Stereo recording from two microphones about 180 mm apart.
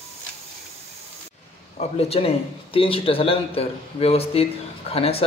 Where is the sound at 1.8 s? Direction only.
35° left (ahead or behind).